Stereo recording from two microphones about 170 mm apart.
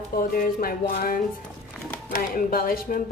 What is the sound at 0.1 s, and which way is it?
A woman's voice, 55° left (ahead or behind).